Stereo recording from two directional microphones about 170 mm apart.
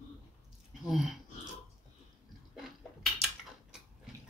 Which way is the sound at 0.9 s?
Centre (ahead or behind).